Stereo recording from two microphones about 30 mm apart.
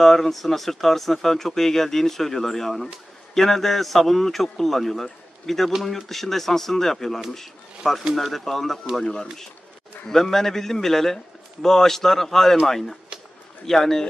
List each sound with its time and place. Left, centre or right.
0.0 s speech: centre
9.0 s speech: left
10.0 s speech: centre